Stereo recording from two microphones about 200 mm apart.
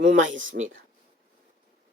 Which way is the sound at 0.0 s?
40° right (ahead or behind).